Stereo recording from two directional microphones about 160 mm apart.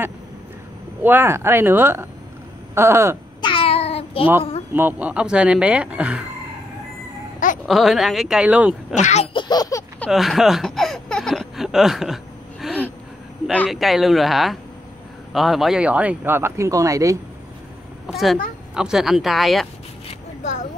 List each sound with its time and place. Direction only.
1.0 s speech: 15° right (ahead or behind)
3.3 s a sound: 30° left (ahead or behind)
4.7 s speech: 10° right (ahead or behind)
7.6 s speech: centre (ahead or behind)
8.9 s speech: 45° left (ahead or behind)
9.3 s baby laughter: 25° left (ahead or behind)
9.9 s a sound: centre (ahead or behind)
13.7 s speech: centre (ahead or behind); by 17.2 s 20° right (ahead or behind)
18.0 s speech: centre (ahead or behind)